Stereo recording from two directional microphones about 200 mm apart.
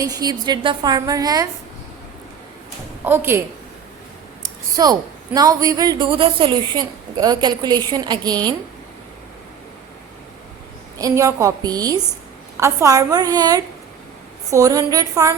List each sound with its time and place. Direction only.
0.0 s a woman's voice: 20° right (ahead or behind)
3.0 s a woman's voice: 10° right (ahead or behind)
4.7 s a woman's voice: 20° right (ahead or behind)
10.9 s a woman's voice: 15° right (ahead or behind)